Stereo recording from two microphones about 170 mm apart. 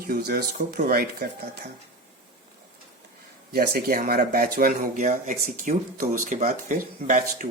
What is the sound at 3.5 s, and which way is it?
Speech, 60° right (ahead or behind).